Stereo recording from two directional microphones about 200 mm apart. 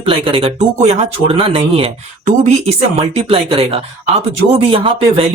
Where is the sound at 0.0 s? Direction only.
25° right (ahead or behind).